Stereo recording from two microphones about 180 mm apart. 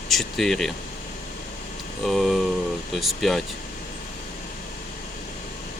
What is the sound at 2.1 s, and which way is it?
Speech, centre (ahead or behind).